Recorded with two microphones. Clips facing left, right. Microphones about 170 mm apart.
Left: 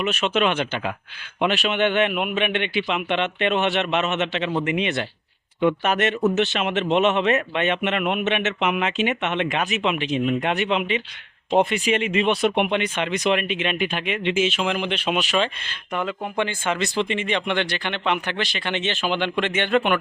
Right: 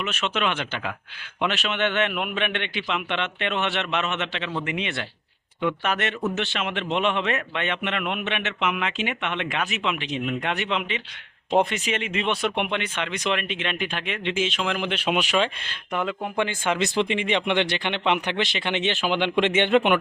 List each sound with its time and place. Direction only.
0.0 s a man's voice: 15° left (ahead or behind); by 16.5 s centre (ahead or behind)
16.5 s speech: 10° right (ahead or behind)